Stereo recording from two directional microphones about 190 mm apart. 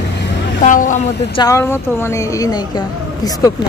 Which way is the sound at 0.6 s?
40° left (ahead or behind).